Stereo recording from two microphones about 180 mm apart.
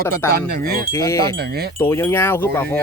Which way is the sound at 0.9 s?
15° left (ahead or behind).